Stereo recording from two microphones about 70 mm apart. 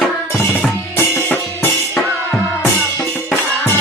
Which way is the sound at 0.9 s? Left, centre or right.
Left.